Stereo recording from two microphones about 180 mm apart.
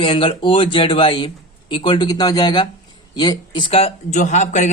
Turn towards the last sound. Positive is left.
turn(degrees=40)  # may be behind; listen again after turning